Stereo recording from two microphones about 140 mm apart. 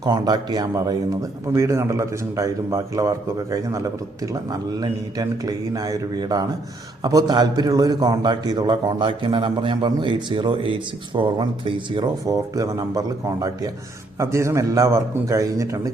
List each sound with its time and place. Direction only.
0.0 s a man's voice: 30° right (ahead or behind)
12.2 s a man's voice: 25° right (ahead or behind)